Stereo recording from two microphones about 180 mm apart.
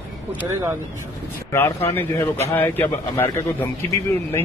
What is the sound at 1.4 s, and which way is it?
Speech, 15° left (ahead or behind).